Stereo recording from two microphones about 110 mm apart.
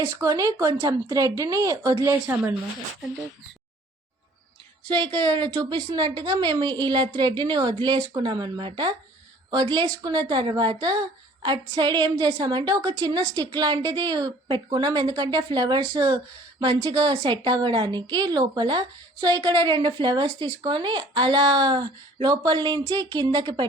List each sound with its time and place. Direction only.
0.2 s a woman's voice: 30° right (ahead or behind)
4.9 s a woman's voice: 45° right (ahead or behind)